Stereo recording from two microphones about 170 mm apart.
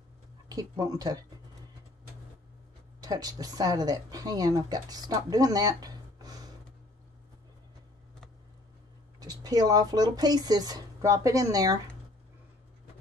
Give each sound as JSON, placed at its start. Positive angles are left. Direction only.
{"t": 0.5, "sound": "speech", "side_deg": -20}
{"t": 3.0, "sound": "speech", "side_deg": -20}
{"t": 9.2, "sound": "speech", "side_deg": -20}